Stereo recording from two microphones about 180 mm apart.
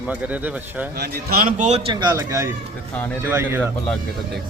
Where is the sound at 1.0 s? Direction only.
60° right (ahead or behind); by 3.7 s 15° right (ahead or behind).